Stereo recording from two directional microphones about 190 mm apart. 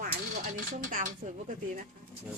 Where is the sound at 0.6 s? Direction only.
45° right (ahead or behind).